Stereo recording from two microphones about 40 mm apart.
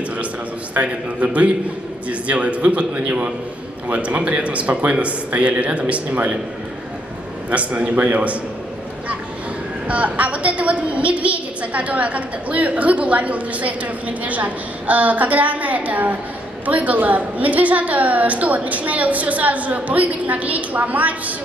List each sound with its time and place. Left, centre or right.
0.7 s a woman's voice: right
7.4 s a woman's voice: right
9.8 s a woman's voice: right